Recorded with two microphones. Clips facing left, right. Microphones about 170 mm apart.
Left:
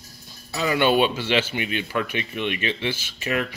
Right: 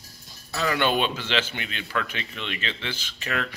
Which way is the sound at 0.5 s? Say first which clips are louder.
Left 4 dB; 10° left (ahead or behind).